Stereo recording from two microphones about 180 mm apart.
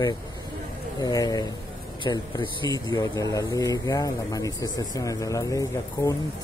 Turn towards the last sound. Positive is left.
turn(degrees=20)  # may be behind; listen again after turning